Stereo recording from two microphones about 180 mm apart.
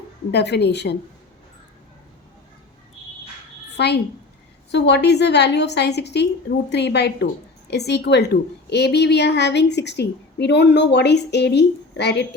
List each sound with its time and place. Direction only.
0.3 s a woman's voice: 65° left (ahead or behind)
3.8 s a woman's voice: 65° left (ahead or behind)